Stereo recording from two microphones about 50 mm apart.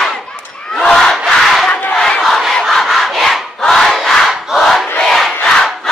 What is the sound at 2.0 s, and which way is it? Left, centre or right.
Battle cry, centre.